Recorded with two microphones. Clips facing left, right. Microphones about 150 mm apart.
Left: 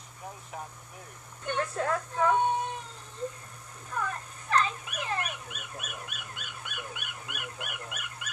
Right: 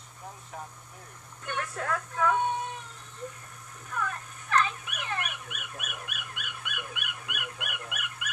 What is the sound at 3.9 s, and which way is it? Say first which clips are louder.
Dog: even; 30° left (ahead or behind).